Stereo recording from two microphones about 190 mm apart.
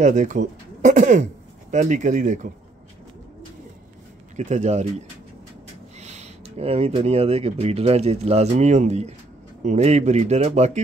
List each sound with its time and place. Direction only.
0.0 s speech: 40° right (ahead or behind)
4.4 s speech: 40° right (ahead or behind)
5.9 s speech: 35° right (ahead or behind)